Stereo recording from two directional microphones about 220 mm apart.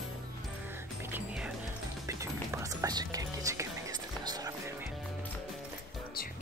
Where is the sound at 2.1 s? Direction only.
15° right (ahead or behind).